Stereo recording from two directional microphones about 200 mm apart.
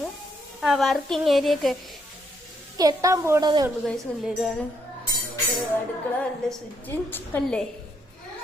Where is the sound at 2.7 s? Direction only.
15° right (ahead or behind).